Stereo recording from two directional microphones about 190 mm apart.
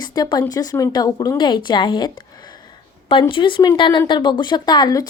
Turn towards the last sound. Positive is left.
turn(degrees=20)  # may be behind; listen again after turning